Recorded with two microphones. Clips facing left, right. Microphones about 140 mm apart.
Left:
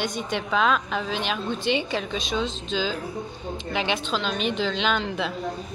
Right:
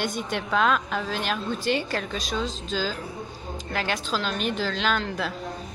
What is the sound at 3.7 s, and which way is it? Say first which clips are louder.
A woman's voice: left 1 dB; centre (ahead or behind).